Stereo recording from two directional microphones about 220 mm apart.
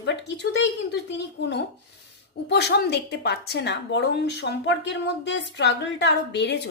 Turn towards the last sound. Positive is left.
turn(degrees=50)  # may be behind; listen again after turning